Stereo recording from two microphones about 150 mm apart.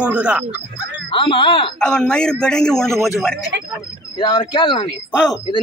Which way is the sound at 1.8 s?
5° left (ahead or behind).